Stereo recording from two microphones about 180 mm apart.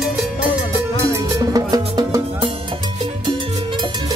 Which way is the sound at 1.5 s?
20° right (ahead or behind).